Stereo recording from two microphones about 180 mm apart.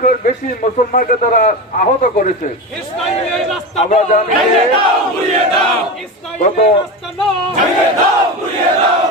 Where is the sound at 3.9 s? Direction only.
40° left (ahead or behind).